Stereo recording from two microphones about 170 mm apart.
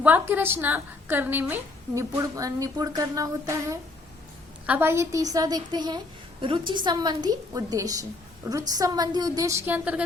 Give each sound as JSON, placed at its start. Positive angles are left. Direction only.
{"t": 0.0, "sound": "a woman's voice", "side_deg": -10}